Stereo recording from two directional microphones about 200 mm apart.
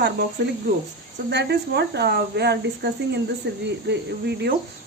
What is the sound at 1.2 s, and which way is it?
Speech, 55° right (ahead or behind).